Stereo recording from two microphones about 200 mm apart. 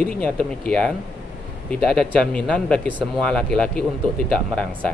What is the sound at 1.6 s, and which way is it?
Speech, 5° left (ahead or behind).